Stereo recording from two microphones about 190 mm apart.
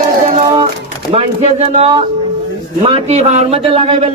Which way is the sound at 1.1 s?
30° right (ahead or behind).